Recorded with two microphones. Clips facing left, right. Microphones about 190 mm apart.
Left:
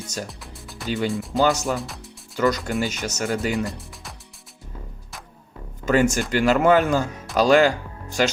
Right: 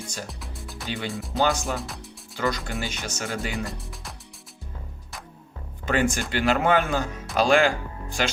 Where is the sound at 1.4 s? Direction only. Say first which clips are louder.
Left 4 dB; 40° left (ahead or behind).